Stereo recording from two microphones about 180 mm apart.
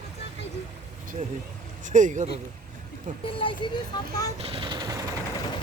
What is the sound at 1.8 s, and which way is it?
Speech, 45° right (ahead or behind).